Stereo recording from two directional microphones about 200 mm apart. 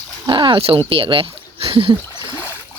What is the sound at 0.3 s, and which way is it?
Speech, 25° right (ahead or behind).